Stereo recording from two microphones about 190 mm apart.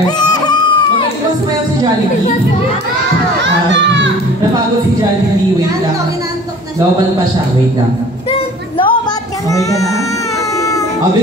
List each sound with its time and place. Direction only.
0.2 s music: 20° left (ahead or behind)
3.4 s crowd: 70° right (ahead or behind)
8.3 s music: 30° left (ahead or behind)
9.5 s speech: 15° left (ahead or behind)